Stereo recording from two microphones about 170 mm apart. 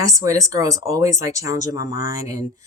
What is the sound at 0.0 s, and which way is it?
Speech, 20° right (ahead or behind).